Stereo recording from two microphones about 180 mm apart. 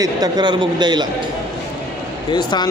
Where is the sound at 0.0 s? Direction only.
20° right (ahead or behind).